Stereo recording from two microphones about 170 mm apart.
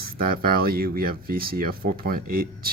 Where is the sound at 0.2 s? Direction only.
60° right (ahead or behind).